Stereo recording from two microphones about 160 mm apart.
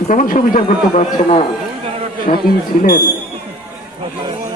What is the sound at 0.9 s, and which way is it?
Speech, 40° left (ahead or behind).